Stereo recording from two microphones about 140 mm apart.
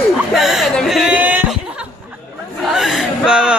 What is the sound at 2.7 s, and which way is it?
Speech, 5° right (ahead or behind).